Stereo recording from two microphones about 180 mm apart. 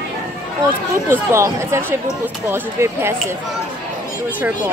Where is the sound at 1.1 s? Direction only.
15° right (ahead or behind).